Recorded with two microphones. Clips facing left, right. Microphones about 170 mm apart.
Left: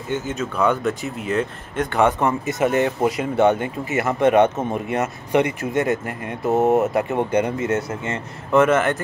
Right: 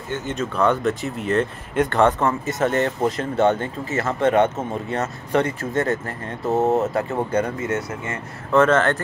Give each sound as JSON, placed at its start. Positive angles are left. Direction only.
{"t": 0.3, "sound": "speech", "side_deg": 5}
{"t": 2.0, "sound": "speech", "side_deg": 15}
{"t": 8.5, "sound": "speech", "side_deg": 15}